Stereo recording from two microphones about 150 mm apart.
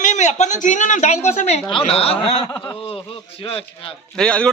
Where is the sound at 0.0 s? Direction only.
55° left (ahead or behind).